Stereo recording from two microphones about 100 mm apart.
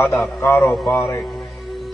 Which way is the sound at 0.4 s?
25° left (ahead or behind).